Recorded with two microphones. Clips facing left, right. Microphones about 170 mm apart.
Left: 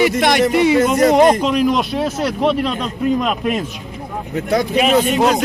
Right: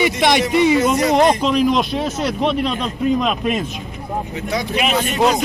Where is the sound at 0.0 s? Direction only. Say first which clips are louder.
Left 2 dB; 50° left (ahead or behind).